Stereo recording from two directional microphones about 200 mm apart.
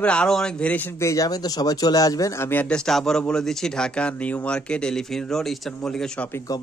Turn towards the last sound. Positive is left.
turn(degrees=10)  # may be behind; listen again after turning